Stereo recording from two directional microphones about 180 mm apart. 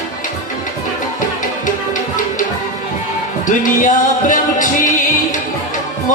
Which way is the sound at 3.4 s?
45° left (ahead or behind).